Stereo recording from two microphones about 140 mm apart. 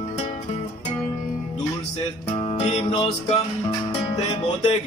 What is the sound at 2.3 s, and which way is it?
Male singing, 50° left (ahead or behind).